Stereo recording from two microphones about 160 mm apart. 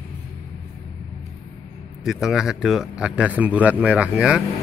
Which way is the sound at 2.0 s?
Centre (ahead or behind).